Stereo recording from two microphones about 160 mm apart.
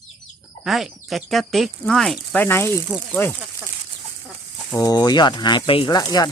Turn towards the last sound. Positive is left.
turn(degrees=25)  # may be behind; listen again after turning